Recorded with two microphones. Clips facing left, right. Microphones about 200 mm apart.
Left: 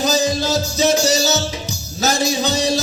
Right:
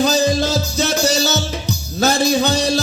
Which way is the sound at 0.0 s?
60° right (ahead or behind).